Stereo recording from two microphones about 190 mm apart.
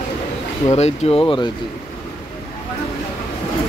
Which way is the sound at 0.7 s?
35° left (ahead or behind).